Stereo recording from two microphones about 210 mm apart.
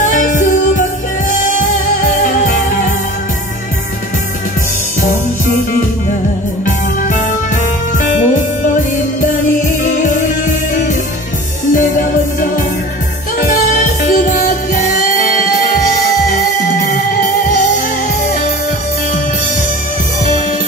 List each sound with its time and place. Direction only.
0.0 s music: 40° left (ahead or behind)
6.6 s music: 40° left (ahead or behind)
10.0 s music: 40° left (ahead or behind)
11.7 s music: 40° left (ahead or behind)